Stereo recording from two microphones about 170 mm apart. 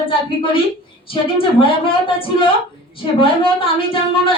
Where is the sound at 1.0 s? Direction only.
30° left (ahead or behind).